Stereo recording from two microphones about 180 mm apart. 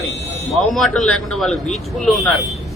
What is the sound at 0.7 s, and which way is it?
Speech, centre (ahead or behind).